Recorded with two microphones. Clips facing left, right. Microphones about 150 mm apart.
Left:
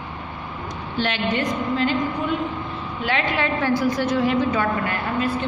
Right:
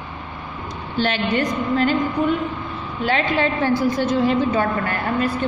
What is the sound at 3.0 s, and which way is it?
A woman's voice, 35° right (ahead or behind).